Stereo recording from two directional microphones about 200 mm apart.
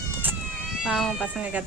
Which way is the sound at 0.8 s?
Centre (ahead or behind).